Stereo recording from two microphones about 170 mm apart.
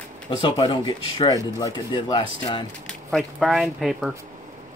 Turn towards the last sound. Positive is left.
turn(degrees=0)  # may be behind; listen again after turning